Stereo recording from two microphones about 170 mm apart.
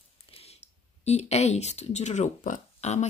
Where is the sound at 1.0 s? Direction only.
40° left (ahead or behind).